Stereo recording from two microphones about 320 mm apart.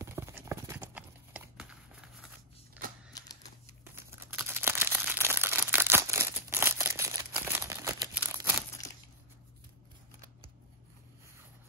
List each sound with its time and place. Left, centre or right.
0.0 s clip-clop: centre
2.8 s typewriter: right
3.8 s a sound: centre
7.5 s crumpling: centre